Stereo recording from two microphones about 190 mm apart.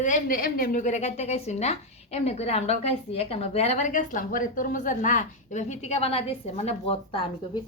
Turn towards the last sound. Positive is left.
turn(degrees=30)  # may be behind; listen again after turning